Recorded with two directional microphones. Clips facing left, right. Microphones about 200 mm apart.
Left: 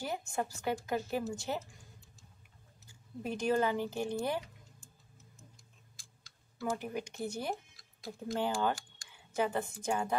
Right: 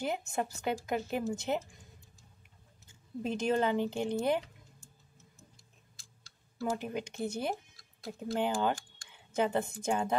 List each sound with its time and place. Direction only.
0.0 s speech: 20° right (ahead or behind)
2.9 s speech: 25° right (ahead or behind)
6.6 s a woman's voice: 20° right (ahead or behind)